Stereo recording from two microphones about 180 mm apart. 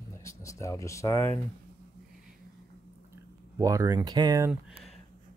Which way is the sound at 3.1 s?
15° right (ahead or behind).